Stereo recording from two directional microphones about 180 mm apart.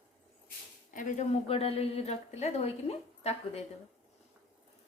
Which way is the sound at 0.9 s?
45° left (ahead or behind).